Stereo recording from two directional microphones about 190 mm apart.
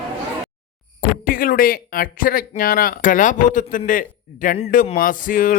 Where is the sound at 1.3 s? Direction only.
50° left (ahead or behind).